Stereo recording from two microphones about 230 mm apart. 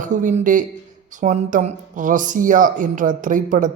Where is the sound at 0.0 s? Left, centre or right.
Right.